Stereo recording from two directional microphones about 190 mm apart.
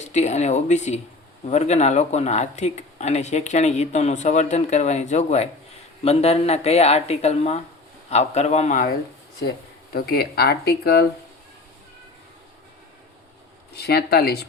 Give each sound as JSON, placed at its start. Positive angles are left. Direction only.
{"t": 0.0, "sound": "speech", "side_deg": 35}
{"t": 9.9, "sound": "speech", "side_deg": 55}
{"t": 13.7, "sound": "speech", "side_deg": 55}